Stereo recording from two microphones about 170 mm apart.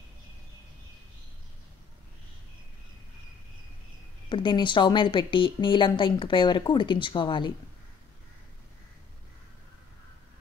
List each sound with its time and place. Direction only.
4.3 s speech: 30° left (ahead or behind)